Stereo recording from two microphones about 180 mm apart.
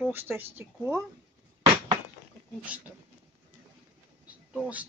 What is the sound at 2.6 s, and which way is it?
Speech, 5° right (ahead or behind).